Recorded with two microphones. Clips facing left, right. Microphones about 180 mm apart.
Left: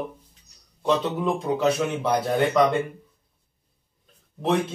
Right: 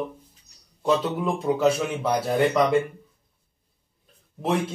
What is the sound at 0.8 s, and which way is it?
A man's voice, 5° right (ahead or behind).